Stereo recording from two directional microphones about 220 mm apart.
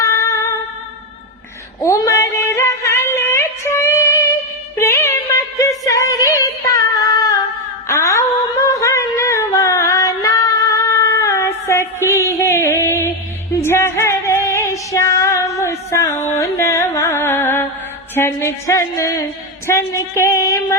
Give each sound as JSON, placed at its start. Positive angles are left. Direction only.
{"t": 0.0, "sound": "music", "side_deg": 15}
{"t": 1.8, "sound": "female singing", "side_deg": 15}
{"t": 4.8, "sound": "music", "side_deg": 10}
{"t": 7.9, "sound": "a sound", "side_deg": 15}
{"t": 13.5, "sound": "music", "side_deg": 10}
{"t": 18.1, "sound": "a woman's voice", "side_deg": 10}